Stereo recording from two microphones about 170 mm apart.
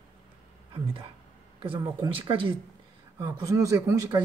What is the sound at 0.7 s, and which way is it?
Speech, 30° right (ahead or behind).